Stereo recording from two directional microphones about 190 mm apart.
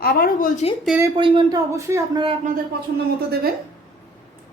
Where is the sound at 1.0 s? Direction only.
25° right (ahead or behind).